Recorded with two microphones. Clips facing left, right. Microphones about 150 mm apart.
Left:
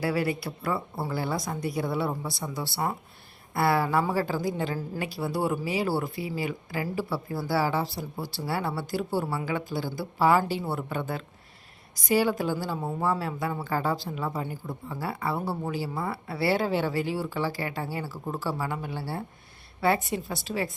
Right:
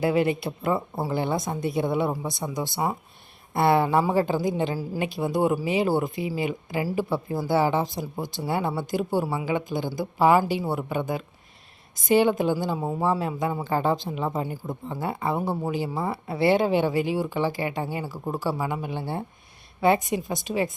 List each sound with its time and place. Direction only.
0.0 s a woman's voice: 20° right (ahead or behind)